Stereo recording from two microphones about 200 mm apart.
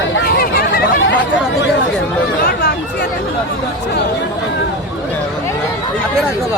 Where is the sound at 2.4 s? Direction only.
50° left (ahead or behind).